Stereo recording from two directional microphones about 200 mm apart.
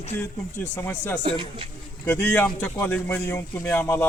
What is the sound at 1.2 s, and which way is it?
Speech, 25° right (ahead or behind).